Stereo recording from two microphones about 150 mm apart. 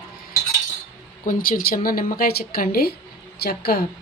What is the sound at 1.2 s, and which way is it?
A woman's voice, 65° left (ahead or behind).